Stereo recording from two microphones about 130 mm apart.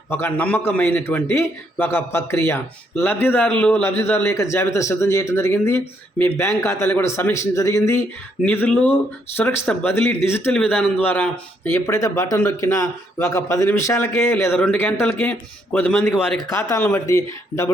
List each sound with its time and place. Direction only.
0.1 s a man's voice: 15° left (ahead or behind)
8.4 s a man's voice: 10° left (ahead or behind)